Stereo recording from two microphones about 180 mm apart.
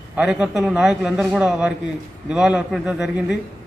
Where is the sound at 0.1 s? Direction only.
5° right (ahead or behind).